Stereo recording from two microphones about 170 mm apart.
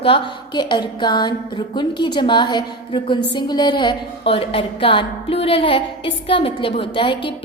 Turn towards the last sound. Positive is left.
turn(degrees=30)  # may be behind; listen again after turning